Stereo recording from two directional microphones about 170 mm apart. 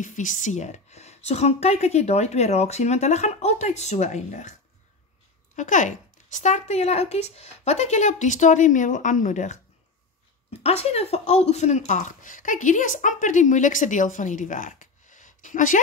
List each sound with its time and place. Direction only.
0.0 s a woman's voice: 50° left (ahead or behind)
5.6 s speech: 45° left (ahead or behind)
10.6 s a woman's voice: 35° left (ahead or behind)